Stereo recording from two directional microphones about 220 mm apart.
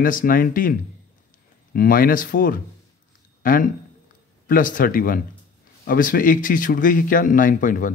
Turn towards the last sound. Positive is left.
turn(degrees=35)  # may be behind; listen again after turning